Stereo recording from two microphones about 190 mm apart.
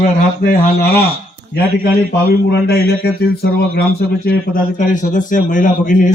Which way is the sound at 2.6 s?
55° left (ahead or behind).